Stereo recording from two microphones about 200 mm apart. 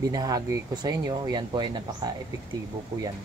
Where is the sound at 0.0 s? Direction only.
20° right (ahead or behind).